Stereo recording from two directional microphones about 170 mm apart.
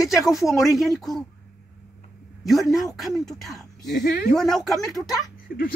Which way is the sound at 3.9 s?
70° left (ahead or behind).